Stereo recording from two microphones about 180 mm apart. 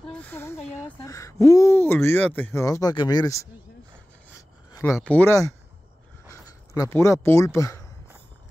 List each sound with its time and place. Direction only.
0.1 s speech: 10° left (ahead or behind)
4.4 s rub: 15° left (ahead or behind)
5.0 s speech: 10° left (ahead or behind)